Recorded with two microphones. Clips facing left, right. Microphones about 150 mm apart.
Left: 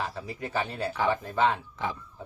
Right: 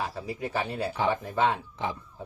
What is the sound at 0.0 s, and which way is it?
Speech, 10° right (ahead or behind).